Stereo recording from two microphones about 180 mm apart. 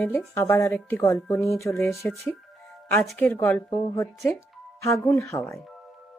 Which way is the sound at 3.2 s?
10° left (ahead or behind).